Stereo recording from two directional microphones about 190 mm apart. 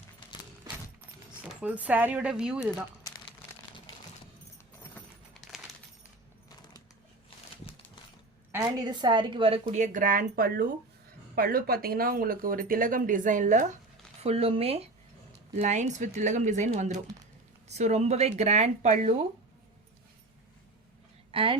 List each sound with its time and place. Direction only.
1.4 s speech: 5° right (ahead or behind)
4.8 s a sound: 10° left (ahead or behind)
6.5 s a sound: 20° left (ahead or behind)
8.8 s a woman's voice: 25° right (ahead or behind)
9.6 s speech: 45° right (ahead or behind)
14.2 s speech: 30° right (ahead or behind)
21.3 s a woman's voice: 30° right (ahead or behind)